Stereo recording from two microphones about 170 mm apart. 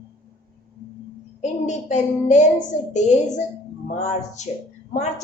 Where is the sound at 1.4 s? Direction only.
45° left (ahead or behind).